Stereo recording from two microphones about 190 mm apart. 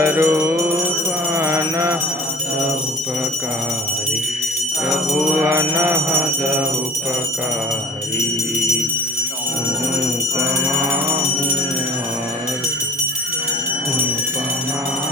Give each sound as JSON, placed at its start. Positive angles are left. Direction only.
{"t": 0.0, "sound": "music", "side_deg": -15}
{"t": 5.4, "sound": "music", "side_deg": -10}